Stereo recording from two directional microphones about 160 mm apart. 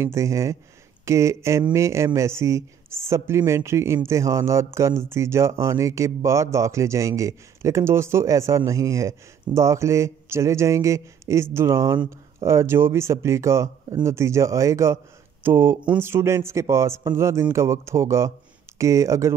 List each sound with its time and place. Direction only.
0.0 s speech: 20° right (ahead or behind)